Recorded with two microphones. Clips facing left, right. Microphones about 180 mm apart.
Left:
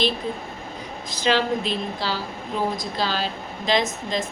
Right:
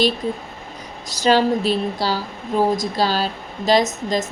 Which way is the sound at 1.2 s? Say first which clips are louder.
Right 5 dB; 40° right (ahead or behind).